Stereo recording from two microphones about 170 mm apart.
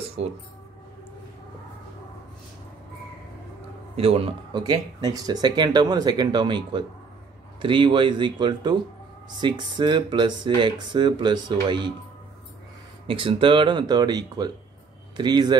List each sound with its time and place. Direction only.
0.2 s speech: 40° right (ahead or behind)
3.9 s speech: 35° right (ahead or behind)
13.0 s speech: 30° right (ahead or behind)